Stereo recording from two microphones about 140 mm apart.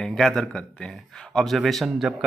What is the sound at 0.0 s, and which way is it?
Speech, centre (ahead or behind).